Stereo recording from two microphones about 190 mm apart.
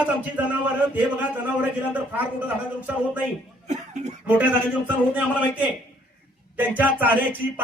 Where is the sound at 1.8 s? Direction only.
10° right (ahead or behind).